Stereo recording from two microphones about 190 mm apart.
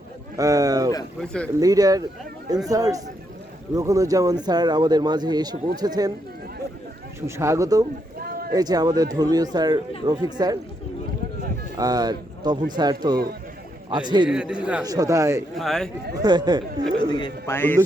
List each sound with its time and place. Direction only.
0.3 s speech: 20° right (ahead or behind)
1.2 s a man's voice: 5° left (ahead or behind)
1.5 s speech: 20° right (ahead or behind)
7.3 s speech: 15° right (ahead or behind)
8.2 s a sound: 50° right (ahead or behind)
8.5 s speech: 20° right (ahead or behind)
11.8 s speech: 20° right (ahead or behind)
14.3 s a man's voice: 5° right (ahead or behind)
14.8 s speech: 20° right (ahead or behind)
15.5 s a man's voice: centre (ahead or behind)
16.1 s speech: 20° right (ahead or behind)
17.0 s speech: 25° left (ahead or behind)
17.5 s a man's voice: 10° left (ahead or behind)